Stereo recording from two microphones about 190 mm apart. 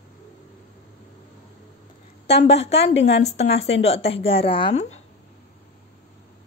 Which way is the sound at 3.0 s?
70° left (ahead or behind).